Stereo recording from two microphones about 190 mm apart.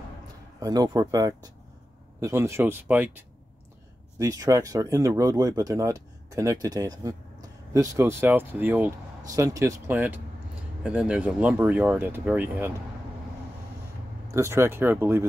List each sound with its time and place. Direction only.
0.6 s speech: 20° right (ahead or behind)
14.3 s speech: 15° right (ahead or behind)